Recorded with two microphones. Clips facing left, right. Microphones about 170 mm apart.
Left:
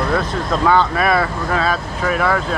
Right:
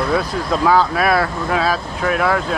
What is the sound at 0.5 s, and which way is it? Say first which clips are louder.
Speech: even; 5° right (ahead or behind).